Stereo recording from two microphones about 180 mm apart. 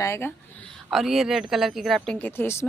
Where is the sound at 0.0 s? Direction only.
15° left (ahead or behind).